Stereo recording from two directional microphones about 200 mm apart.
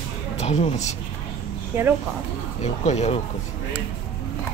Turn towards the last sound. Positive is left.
turn(degrees=35)  # may be behind; listen again after turning